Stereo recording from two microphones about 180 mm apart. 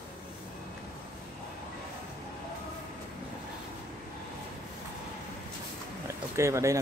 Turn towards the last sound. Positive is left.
turn(degrees=-15)  # may be behind; listen again after turning